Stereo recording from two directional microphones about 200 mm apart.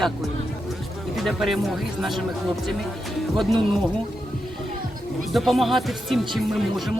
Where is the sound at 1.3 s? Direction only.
Centre (ahead or behind).